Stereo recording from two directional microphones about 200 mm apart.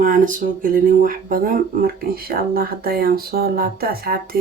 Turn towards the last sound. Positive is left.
turn(degrees=-50)  # may be behind; listen again after turning